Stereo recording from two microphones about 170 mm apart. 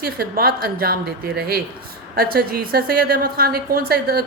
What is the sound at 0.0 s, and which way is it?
A woman's voice, 60° right (ahead or behind).